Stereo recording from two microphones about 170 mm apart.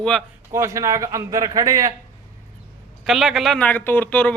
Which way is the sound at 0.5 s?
15° right (ahead or behind).